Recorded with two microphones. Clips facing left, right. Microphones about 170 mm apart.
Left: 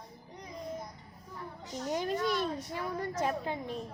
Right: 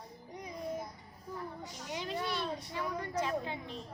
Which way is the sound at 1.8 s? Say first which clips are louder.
Left 6 dB; 45° left (ahead or behind).